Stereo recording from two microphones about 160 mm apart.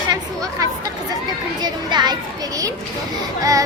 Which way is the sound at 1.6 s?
25° right (ahead or behind).